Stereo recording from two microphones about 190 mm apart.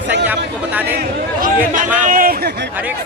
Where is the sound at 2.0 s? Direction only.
45° right (ahead or behind).